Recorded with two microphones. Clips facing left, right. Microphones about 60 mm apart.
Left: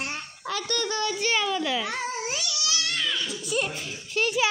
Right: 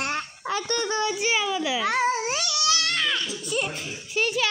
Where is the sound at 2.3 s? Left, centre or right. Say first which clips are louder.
Right 5 dB; right.